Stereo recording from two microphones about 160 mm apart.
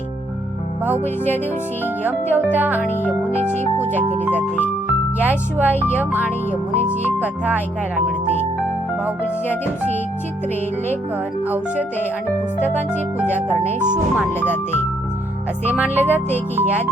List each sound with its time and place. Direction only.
1.0 s speech: 15° left (ahead or behind)
2.3 s speech: 10° right (ahead or behind)
2.8 s speech: 15° left (ahead or behind)
4.0 s speech: 40° right (ahead or behind)
5.2 s speech: 10° right (ahead or behind)
11.4 s speech: 10° right (ahead or behind)
12.5 s speech: 15° left (ahead or behind)
13.7 s speech: 50° right (ahead or behind)
14.3 s speech: 15° left (ahead or behind)
15.7 s speech: 10° right (ahead or behind)